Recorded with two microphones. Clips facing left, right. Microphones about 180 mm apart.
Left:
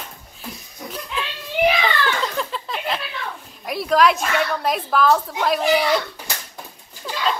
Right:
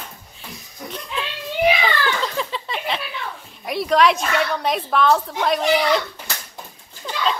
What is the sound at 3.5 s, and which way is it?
Dog, centre (ahead or behind).